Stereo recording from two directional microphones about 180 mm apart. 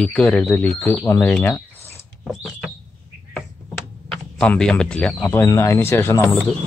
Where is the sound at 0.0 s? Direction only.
5° left (ahead or behind).